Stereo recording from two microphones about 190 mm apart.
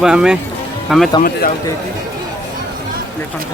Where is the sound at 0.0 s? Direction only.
5° right (ahead or behind).